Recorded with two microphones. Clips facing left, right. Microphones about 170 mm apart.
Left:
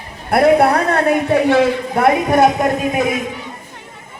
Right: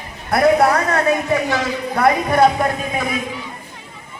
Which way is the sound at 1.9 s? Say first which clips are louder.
Right 1 dB; 25° left (ahead or behind).